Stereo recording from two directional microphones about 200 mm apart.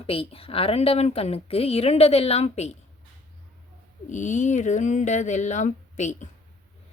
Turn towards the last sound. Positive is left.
turn(degrees=35)  # may be behind; listen again after turning